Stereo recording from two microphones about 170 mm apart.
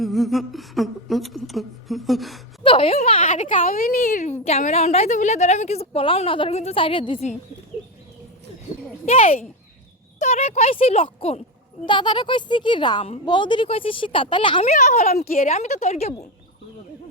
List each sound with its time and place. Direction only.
0.0 s a woman's voice: centre (ahead or behind)
2.6 s a woman's voice: 35° left (ahead or behind)
3.3 s a woman's voice: 50° left (ahead or behind)
9.0 s a woman's voice: 35° left (ahead or behind)
14.7 s speech: 45° left (ahead or behind)
15.2 s speech: 55° left (ahead or behind)
15.4 s a woman's voice: 40° left (ahead or behind)